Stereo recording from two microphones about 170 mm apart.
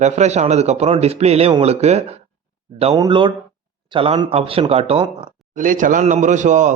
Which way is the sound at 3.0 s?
30° right (ahead or behind).